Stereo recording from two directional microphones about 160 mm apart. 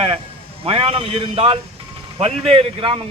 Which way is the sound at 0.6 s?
35° right (ahead or behind).